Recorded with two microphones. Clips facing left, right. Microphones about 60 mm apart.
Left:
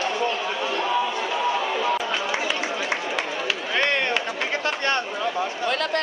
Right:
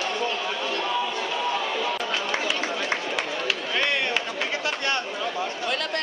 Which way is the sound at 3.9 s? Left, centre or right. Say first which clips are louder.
Left 2 dB; left.